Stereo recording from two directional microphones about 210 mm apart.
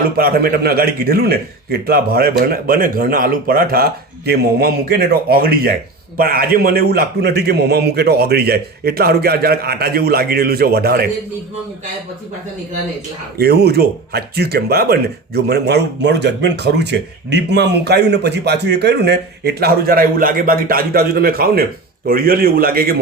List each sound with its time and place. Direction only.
0.2 s speech: 45° right (ahead or behind)
13.4 s speech: 50° right (ahead or behind)